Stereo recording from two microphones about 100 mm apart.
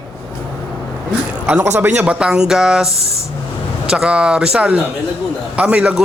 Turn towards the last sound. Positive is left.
turn(degrees=-10)  # may be behind; listen again after turning